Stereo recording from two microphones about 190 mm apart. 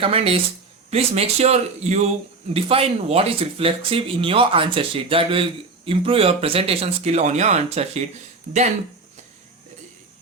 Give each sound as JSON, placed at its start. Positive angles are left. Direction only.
{"t": 0.0, "sound": "speech", "side_deg": -30}